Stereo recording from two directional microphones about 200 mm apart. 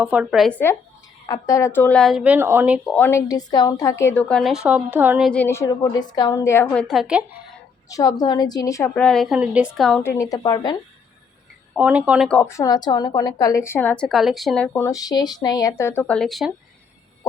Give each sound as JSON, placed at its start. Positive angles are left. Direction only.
{"t": 0.0, "sound": "a woman's voice", "side_deg": -5}
{"t": 1.3, "sound": "a woman's voice", "side_deg": 15}
{"t": 2.9, "sound": "a woman's voice", "side_deg": 10}
{"t": 5.3, "sound": "a woman's voice", "side_deg": 10}
{"t": 7.9, "sound": "a woman's voice", "side_deg": 15}
{"t": 10.0, "sound": "a woman's voice", "side_deg": 15}
{"t": 11.7, "sound": "a woman's voice", "side_deg": -5}
{"t": 12.3, "sound": "a woman's voice", "side_deg": 10}